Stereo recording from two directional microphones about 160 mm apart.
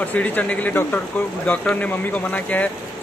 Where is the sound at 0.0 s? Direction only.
10° left (ahead or behind).